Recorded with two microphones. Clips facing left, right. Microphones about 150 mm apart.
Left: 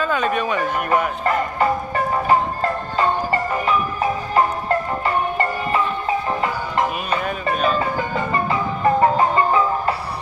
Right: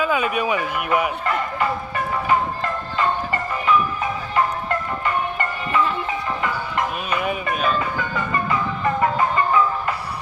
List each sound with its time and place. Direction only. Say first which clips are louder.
0.0 s speech: even; 10° right (ahead or behind)
1.2 s speech: left 3 dB; 40° left (ahead or behind)
3.5 s music: even; 35° left (ahead or behind)
7.4 s music: left 2 dB; 35° left (ahead or behind)